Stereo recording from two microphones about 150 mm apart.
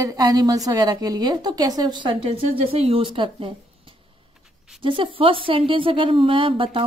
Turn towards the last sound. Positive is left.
turn(degrees=-35)  # may be behind; listen again after turning